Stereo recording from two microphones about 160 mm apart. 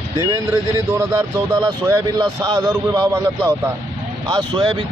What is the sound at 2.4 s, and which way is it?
A man's voice, 25° right (ahead or behind).